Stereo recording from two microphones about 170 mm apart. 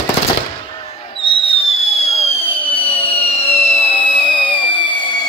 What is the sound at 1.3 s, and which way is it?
Fireworks, 35° left (ahead or behind).